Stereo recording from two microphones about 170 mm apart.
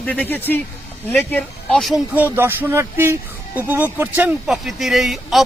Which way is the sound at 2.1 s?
10° right (ahead or behind).